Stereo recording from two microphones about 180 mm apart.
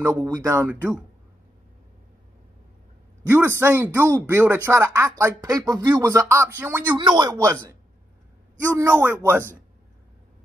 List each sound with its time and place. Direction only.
0.0 s speech: 15° right (ahead or behind)
3.3 s speech: 15° right (ahead or behind)
7.0 s speech: 25° right (ahead or behind)
8.7 s speech: 15° right (ahead or behind)